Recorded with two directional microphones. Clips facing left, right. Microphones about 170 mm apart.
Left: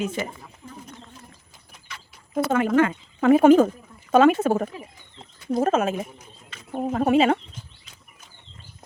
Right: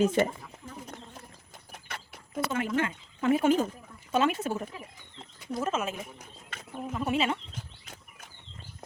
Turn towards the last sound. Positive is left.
turn(degrees=55)  # may be behind; listen again after turning